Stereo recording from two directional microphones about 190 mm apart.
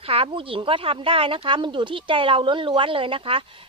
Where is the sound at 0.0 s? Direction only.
30° right (ahead or behind).